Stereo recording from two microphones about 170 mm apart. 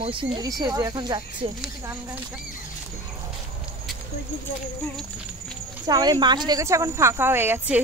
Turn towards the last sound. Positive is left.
turn(degrees=-10)  # may be behind; listen again after turning